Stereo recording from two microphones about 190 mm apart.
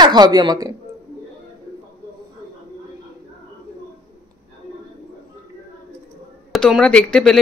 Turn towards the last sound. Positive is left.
turn(degrees=5)  # may be behind; listen again after turning